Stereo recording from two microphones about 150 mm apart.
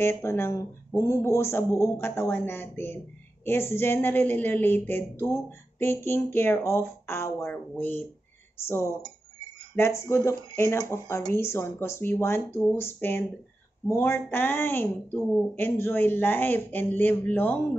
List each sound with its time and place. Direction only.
0.0 s a woman's voice: 15° left (ahead or behind)